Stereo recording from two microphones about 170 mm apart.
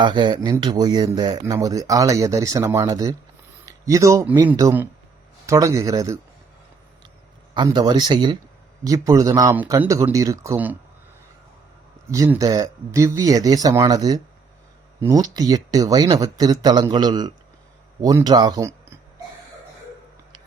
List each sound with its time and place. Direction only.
0.0 s speech: 25° right (ahead or behind)
7.5 s speech: 25° right (ahead or behind)
12.1 s speech: 20° right (ahead or behind)